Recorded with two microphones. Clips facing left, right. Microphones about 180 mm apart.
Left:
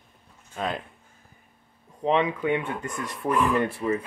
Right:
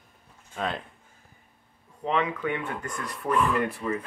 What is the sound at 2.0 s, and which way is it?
Speech, 25° left (ahead or behind).